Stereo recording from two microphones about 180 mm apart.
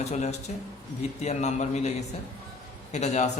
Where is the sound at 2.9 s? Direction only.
40° left (ahead or behind).